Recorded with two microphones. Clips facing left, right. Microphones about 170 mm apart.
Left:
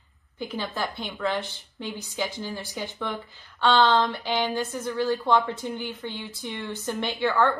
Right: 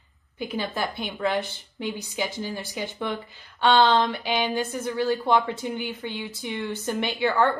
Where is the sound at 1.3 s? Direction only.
15° right (ahead or behind).